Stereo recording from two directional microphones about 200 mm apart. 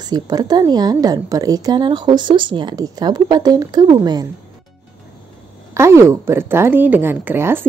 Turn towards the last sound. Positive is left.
turn(degrees=-10)  # may be behind; listen again after turning